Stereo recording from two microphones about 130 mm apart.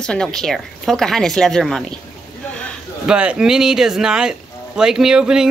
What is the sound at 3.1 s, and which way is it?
Speech, 10° right (ahead or behind).